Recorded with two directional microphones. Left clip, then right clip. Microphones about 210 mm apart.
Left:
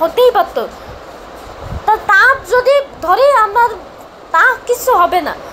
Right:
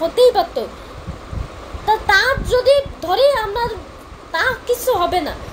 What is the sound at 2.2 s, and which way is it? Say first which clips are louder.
Speech: left 5 dB; centre (ahead or behind).